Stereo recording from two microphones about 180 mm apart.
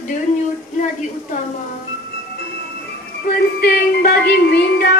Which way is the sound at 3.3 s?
60° left (ahead or behind).